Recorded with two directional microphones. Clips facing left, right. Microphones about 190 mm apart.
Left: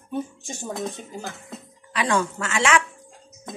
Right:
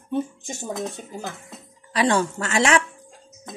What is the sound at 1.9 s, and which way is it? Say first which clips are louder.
Speech: right 3 dB; 35° right (ahead or behind).